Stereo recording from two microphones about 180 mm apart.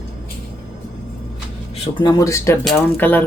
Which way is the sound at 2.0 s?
20° left (ahead or behind).